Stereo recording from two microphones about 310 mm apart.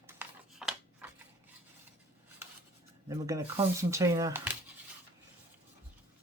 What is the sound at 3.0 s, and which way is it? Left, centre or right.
Speech, centre.